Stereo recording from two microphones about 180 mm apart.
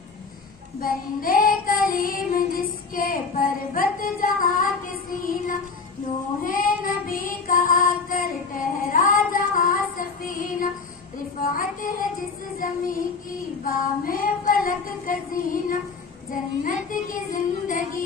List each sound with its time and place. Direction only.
0.7 s child singing: 50° left (ahead or behind)